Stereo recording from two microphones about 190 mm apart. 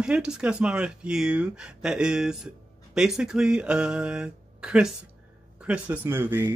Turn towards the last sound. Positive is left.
turn(degrees=-10)  # may be behind; listen again after turning